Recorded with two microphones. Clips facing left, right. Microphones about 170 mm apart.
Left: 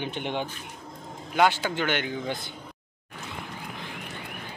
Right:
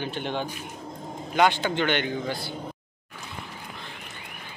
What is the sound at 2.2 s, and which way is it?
Speech, 20° left (ahead or behind).